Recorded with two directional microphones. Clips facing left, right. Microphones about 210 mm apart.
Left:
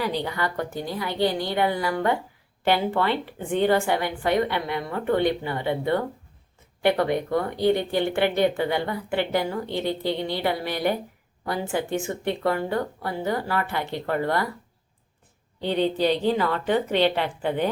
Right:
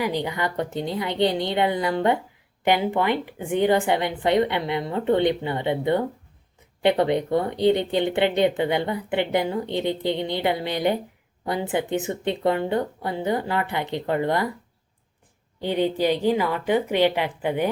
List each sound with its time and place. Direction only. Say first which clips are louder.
0.0 s speech: right 1 dB; 15° right (ahead or behind)
15.6 s a woman's voice: even; 10° right (ahead or behind)